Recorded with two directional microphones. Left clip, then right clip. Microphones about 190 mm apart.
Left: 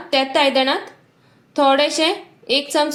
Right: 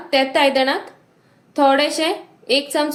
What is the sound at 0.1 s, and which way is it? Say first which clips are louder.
A woman's voice: right 1 dB; 20° left (ahead or behind).